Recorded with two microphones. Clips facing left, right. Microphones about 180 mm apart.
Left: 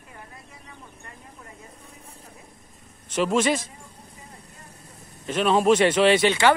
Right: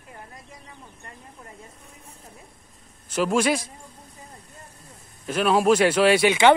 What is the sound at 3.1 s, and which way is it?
Speech, 5° right (ahead or behind).